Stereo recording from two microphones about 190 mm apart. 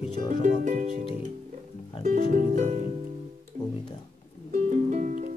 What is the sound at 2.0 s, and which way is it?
Harp, 45° right (ahead or behind).